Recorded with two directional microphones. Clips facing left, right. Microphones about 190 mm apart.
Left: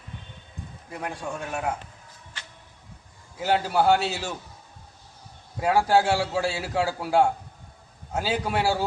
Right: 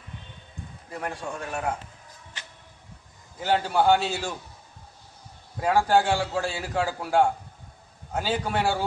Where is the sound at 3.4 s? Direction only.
5° left (ahead or behind).